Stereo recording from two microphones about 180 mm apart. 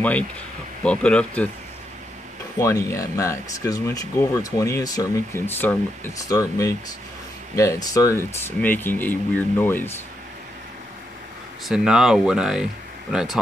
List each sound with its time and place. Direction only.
0.8 s speech: 5° left (ahead or behind)
2.6 s speech: 15° left (ahead or behind)
11.6 s speech: 5° right (ahead or behind)